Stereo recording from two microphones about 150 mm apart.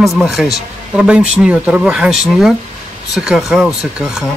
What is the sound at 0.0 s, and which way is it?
Speech, centre (ahead or behind).